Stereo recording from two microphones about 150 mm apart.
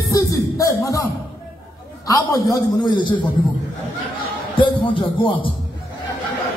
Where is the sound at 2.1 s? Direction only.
30° left (ahead or behind).